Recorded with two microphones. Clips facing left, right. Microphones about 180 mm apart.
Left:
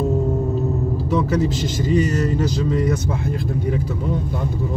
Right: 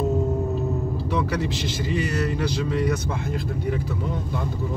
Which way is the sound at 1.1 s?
40° left (ahead or behind).